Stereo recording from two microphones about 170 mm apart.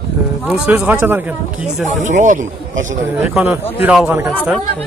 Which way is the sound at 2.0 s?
45° right (ahead or behind).